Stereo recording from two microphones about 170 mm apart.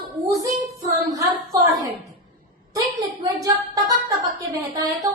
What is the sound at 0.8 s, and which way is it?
Child singing, 20° right (ahead or behind).